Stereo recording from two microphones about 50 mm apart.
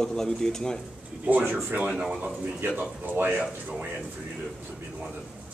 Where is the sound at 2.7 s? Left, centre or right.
Right.